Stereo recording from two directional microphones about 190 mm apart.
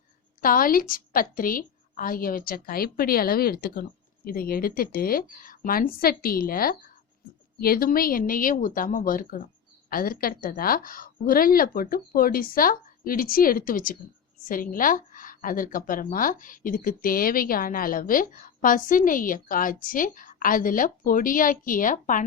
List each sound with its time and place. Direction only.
0.4 s a woman's voice: 50° left (ahead or behind)